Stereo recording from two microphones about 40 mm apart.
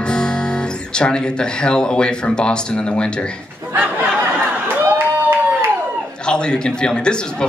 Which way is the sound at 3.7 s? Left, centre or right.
Right.